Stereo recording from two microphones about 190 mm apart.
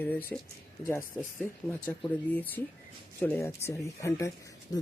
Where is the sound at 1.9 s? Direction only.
10° left (ahead or behind).